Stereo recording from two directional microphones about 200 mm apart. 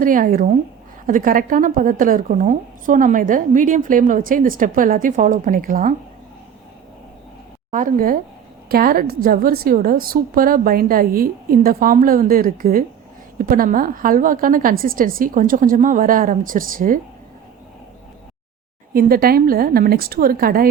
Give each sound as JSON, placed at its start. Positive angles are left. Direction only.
{"t": 0.0, "sound": "a woman's voice", "side_deg": -45}
{"t": 7.7, "sound": "a woman's voice", "side_deg": -40}
{"t": 18.9, "sound": "a woman's voice", "side_deg": -45}